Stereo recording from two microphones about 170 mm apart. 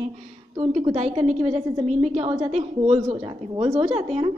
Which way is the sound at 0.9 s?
40° right (ahead or behind).